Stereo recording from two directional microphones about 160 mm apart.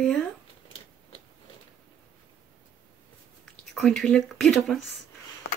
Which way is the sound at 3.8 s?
5° left (ahead or behind).